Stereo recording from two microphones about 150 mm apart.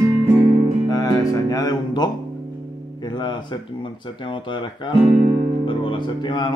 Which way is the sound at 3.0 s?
30° left (ahead or behind).